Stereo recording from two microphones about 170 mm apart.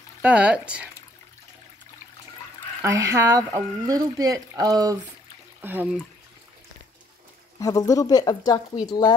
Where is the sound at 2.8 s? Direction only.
15° right (ahead or behind).